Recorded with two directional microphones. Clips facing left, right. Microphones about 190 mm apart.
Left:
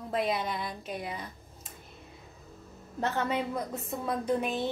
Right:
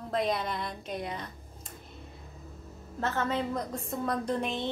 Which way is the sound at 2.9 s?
15° left (ahead or behind).